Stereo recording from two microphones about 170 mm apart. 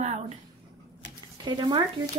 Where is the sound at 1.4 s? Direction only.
25° right (ahead or behind).